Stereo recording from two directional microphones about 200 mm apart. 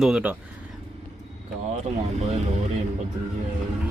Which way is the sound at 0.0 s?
5° right (ahead or behind).